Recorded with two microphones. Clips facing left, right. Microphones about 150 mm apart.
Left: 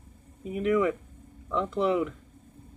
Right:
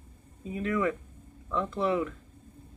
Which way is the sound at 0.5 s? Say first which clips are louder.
Left 4 dB; 10° left (ahead or behind).